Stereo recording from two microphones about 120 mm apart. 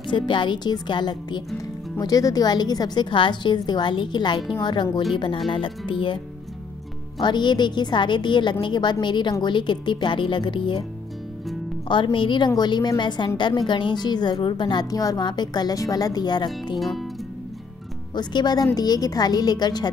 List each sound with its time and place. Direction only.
0.1 s a woman's voice: 40° left (ahead or behind)
7.2 s a woman's voice: 40° left (ahead or behind)
11.9 s a woman's voice: 40° left (ahead or behind)
16.7 s music: centre (ahead or behind)
18.1 s a woman's voice: 35° left (ahead or behind)